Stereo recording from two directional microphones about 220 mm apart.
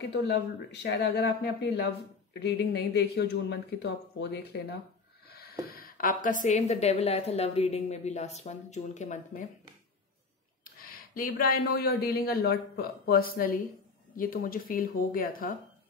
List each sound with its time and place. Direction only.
0.0 s speech: 50° left (ahead or behind)
5.3 s snort: 45° left (ahead or behind)
5.7 s a woman's voice: 40° left (ahead or behind)
10.6 s a woman's voice: 40° left (ahead or behind)